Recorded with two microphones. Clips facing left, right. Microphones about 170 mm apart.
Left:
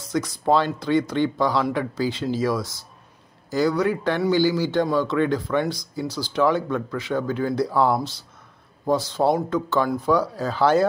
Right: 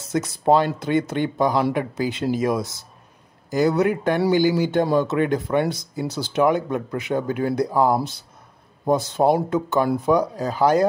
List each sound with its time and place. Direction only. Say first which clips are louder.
0.1 s a man's voice: right 2 dB; 25° right (ahead or behind)